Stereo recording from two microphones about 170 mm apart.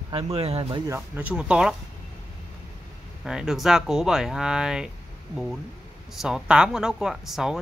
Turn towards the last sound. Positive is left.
turn(degrees=0)  # may be behind; listen again after turning